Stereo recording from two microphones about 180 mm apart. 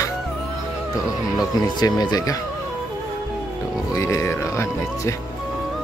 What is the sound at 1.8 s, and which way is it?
Speech, 20° left (ahead or behind).